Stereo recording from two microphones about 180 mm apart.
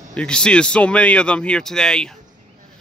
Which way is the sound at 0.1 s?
5° left (ahead or behind).